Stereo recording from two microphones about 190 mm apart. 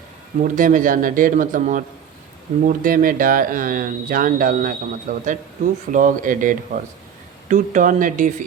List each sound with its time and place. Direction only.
0.4 s speech: 45° right (ahead or behind)